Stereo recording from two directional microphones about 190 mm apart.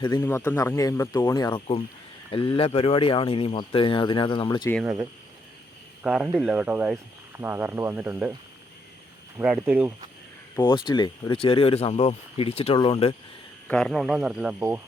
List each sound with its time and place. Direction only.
0.2 s speech: 15° left (ahead or behind)
4.7 s speech: centre (ahead or behind)
9.4 s speech: 5° right (ahead or behind)
10.6 s speech: 25° left (ahead or behind)
13.7 s speech: 5° left (ahead or behind)